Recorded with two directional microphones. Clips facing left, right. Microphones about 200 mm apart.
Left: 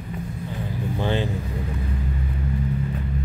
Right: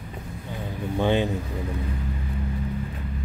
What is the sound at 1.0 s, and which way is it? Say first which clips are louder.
Speech: right 3 dB; 15° right (ahead or behind).